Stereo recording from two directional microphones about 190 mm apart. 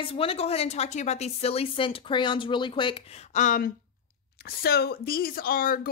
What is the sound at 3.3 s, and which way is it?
Speech, 45° left (ahead or behind).